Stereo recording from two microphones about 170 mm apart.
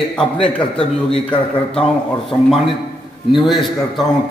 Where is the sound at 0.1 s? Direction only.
5° left (ahead or behind).